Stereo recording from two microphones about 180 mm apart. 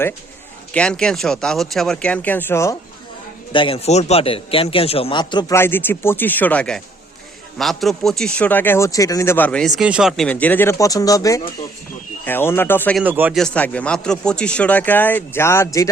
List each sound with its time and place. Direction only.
0.7 s speech: 5° left (ahead or behind)
3.5 s a man's voice: 30° left (ahead or behind); by 13.0 s 10° left (ahead or behind)
13.0 s speech: 10° right (ahead or behind)
13.4 s a man's voice: 5° left (ahead or behind)